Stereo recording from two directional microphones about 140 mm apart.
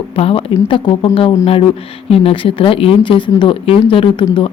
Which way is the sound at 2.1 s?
40° left (ahead or behind).